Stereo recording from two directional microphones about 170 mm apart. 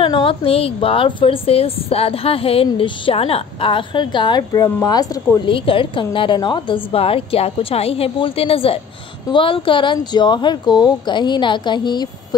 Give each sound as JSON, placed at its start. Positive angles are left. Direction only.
{"t": 0.0, "sound": "a woman's voice", "side_deg": 30}